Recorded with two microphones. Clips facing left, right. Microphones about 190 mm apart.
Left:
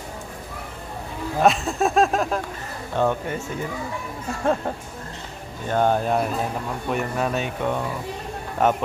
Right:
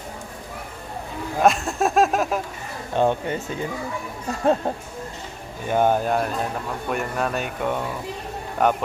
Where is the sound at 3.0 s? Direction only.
20° right (ahead or behind).